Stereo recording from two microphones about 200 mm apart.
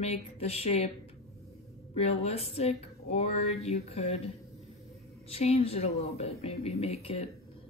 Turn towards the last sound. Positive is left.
turn(degrees=30)  # may be behind; listen again after turning